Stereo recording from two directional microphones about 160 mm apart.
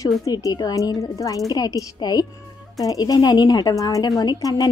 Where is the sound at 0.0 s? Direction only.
20° left (ahead or behind).